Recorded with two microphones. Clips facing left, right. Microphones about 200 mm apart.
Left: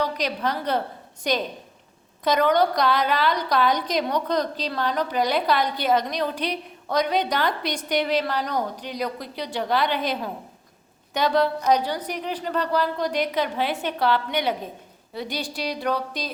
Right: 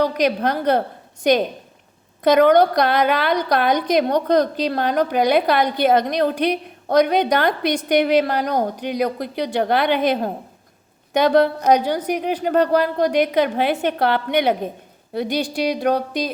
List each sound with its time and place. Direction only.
0.0 s a woman's voice: 55° right (ahead or behind)